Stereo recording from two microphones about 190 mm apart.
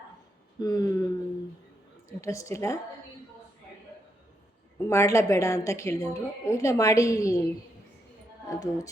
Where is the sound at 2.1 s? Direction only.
15° left (ahead or behind).